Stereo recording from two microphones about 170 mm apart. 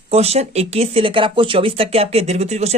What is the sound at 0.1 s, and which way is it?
Speech, 40° right (ahead or behind).